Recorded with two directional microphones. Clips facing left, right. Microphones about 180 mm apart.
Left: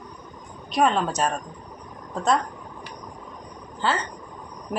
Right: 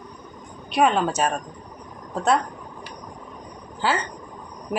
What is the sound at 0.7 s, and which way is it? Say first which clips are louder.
Speech: right 2 dB; 5° right (ahead or behind).